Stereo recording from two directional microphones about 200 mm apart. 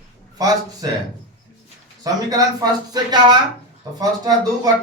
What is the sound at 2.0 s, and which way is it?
Speech, 20° right (ahead or behind).